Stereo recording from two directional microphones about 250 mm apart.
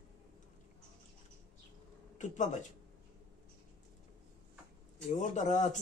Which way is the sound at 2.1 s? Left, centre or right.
Left.